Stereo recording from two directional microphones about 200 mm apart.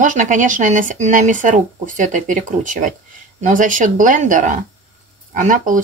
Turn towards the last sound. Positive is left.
turn(degrees=-40)  # may be behind; listen again after turning